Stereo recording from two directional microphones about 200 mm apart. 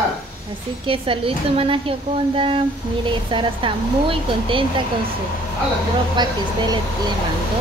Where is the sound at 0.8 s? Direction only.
25° right (ahead or behind).